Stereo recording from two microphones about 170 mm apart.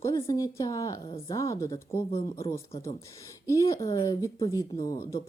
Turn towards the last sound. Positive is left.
turn(degrees=20)  # may be behind; listen again after turning